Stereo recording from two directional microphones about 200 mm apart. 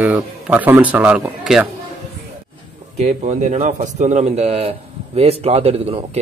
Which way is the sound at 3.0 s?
35° right (ahead or behind).